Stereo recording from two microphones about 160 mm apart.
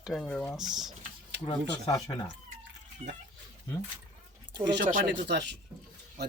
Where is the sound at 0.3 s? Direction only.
10° left (ahead or behind).